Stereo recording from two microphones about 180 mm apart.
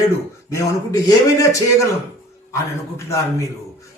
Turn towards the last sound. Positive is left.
turn(degrees=15)  # may be behind; listen again after turning